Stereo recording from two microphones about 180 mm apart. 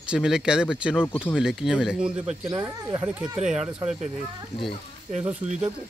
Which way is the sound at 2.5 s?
20° right (ahead or behind).